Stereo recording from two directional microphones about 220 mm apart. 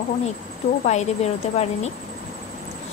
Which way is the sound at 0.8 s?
30° left (ahead or behind).